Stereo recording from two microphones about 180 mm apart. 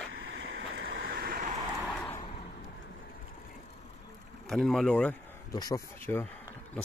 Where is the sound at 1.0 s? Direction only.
55° right (ahead or behind).